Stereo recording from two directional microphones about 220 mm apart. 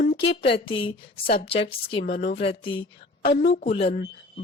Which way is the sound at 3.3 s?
45° left (ahead or behind).